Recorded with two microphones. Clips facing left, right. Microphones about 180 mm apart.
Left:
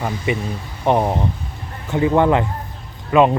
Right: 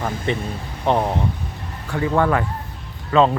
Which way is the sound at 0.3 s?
10° left (ahead or behind).